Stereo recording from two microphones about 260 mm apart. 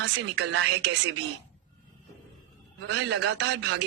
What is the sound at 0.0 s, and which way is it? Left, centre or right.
Speech, right.